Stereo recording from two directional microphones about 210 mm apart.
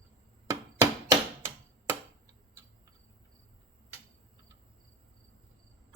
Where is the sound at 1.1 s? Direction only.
15° right (ahead or behind).